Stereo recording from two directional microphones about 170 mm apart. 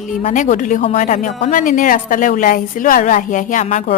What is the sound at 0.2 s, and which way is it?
A woman's voice, 45° left (ahead or behind).